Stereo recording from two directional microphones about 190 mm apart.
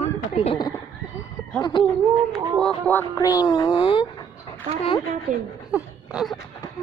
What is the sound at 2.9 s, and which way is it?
Speech, 15° left (ahead or behind).